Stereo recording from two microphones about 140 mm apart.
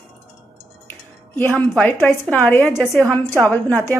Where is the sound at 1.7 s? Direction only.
10° left (ahead or behind).